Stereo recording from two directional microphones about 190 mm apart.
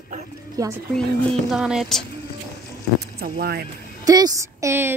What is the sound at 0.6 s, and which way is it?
Speech, 20° right (ahead or behind).